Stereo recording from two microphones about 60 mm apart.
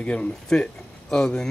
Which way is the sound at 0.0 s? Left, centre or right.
Centre.